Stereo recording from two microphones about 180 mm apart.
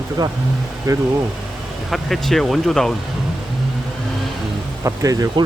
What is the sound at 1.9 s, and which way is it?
Speech, centre (ahead or behind).